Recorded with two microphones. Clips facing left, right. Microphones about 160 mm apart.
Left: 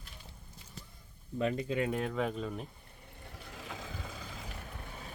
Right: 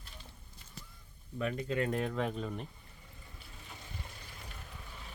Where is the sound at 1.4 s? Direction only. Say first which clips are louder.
Left 3 dB; 25° left (ahead or behind).